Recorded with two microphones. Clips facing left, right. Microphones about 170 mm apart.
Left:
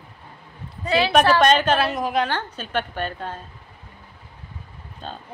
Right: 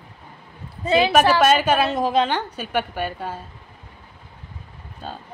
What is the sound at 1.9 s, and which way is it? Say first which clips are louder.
Speech: right 3 dB; 25° right (ahead or behind).